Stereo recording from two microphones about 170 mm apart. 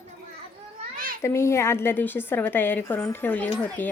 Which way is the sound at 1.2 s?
15° left (ahead or behind).